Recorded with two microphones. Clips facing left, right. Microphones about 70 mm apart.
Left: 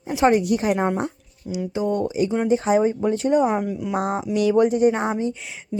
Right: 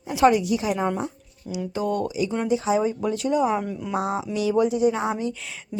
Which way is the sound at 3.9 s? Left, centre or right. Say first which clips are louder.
Left 1 dB; left.